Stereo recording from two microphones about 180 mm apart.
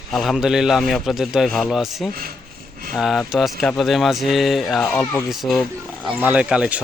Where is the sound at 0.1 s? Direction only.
Centre (ahead or behind).